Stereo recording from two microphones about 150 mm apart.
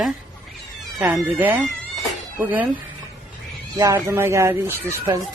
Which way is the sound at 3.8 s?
20° right (ahead or behind).